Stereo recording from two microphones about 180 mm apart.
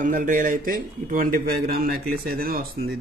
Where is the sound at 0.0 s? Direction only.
50° right (ahead or behind).